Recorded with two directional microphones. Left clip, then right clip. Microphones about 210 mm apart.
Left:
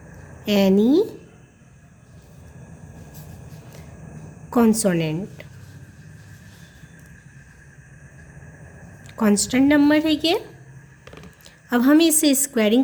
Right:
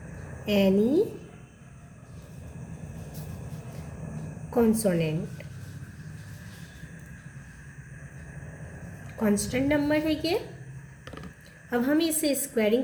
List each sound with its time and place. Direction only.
0.4 s a woman's voice: 45° left (ahead or behind)
4.5 s a woman's voice: 50° left (ahead or behind)
9.1 s a woman's voice: 50° left (ahead or behind)
11.7 s a woman's voice: 50° left (ahead or behind)